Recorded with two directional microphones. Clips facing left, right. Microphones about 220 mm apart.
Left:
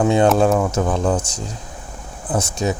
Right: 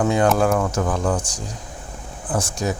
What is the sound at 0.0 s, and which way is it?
Speech, 25° left (ahead or behind).